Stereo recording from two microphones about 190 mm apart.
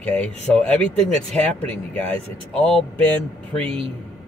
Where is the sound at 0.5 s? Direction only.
5° left (ahead or behind).